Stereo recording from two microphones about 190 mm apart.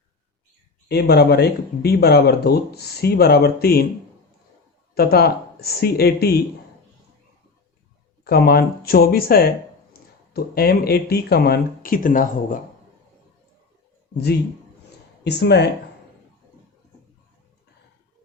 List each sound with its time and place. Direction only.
0.9 s speech: 60° left (ahead or behind)
4.9 s speech: 55° left (ahead or behind)
8.2 s speech: 55° left (ahead or behind)
15.2 s speech: 60° left (ahead or behind)